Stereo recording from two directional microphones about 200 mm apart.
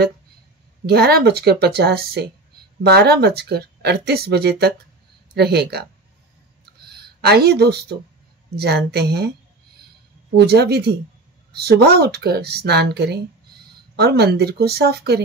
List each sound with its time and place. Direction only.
0.8 s speech: 55° right (ahead or behind)
6.8 s a sound: 55° right (ahead or behind)
8.5 s a woman's voice: 55° right (ahead or behind)
10.3 s speech: 55° right (ahead or behind)